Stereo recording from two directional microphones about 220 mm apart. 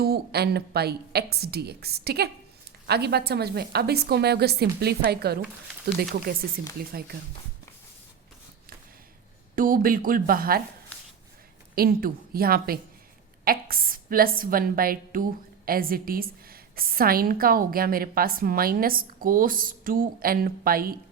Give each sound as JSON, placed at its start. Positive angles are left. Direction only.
{"t": 0.0, "sound": "a woman's voice", "side_deg": -45}
{"t": 9.6, "sound": "a woman's voice", "side_deg": -40}
{"t": 11.7, "sound": "a woman's voice", "side_deg": -45}